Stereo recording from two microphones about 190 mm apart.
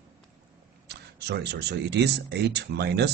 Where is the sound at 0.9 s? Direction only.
60° right (ahead or behind).